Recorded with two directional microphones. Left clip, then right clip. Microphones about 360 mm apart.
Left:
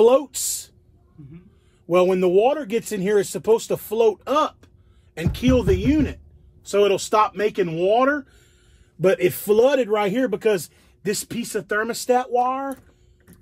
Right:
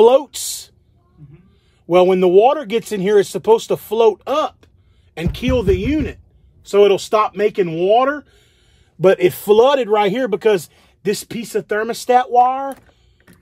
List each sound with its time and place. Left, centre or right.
0.0 s a man's voice: right
1.9 s a man's voice: right